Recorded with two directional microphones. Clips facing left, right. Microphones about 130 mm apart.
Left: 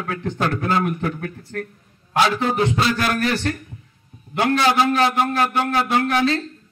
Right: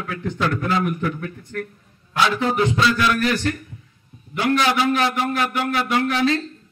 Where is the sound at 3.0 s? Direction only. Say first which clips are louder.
Right 2 dB; 50° left (ahead or behind).